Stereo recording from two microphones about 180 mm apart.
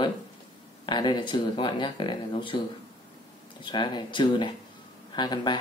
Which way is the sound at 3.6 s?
25° left (ahead or behind).